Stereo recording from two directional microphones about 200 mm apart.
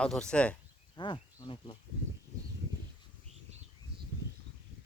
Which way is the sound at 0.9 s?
25° left (ahead or behind).